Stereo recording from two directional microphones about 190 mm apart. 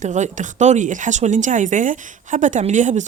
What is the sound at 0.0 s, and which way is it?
Speech, 40° right (ahead or behind).